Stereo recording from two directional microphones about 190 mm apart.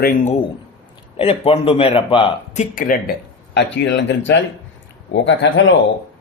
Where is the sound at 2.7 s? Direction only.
45° left (ahead or behind).